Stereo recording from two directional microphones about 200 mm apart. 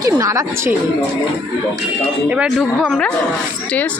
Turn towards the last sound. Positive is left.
turn(degrees=5)  # may be behind; listen again after turning